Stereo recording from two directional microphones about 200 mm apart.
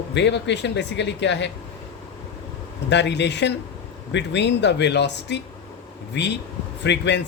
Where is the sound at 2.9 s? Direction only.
60° left (ahead or behind).